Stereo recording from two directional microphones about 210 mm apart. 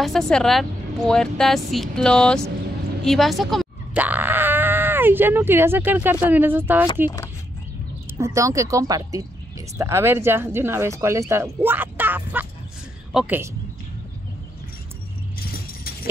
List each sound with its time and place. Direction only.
0.0 s speech: centre (ahead or behind)
8.2 s speech: 15° right (ahead or behind)